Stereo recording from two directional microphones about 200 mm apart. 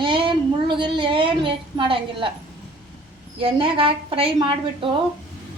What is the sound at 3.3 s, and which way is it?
Speech, 25° right (ahead or behind).